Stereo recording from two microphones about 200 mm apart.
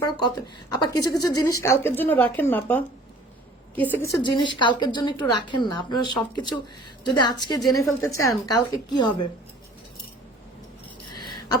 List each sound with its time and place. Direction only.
0.0 s a woman's voice: 20° left (ahead or behind)
3.9 s a woman's voice: 15° left (ahead or behind)
11.1 s a sound: 20° left (ahead or behind)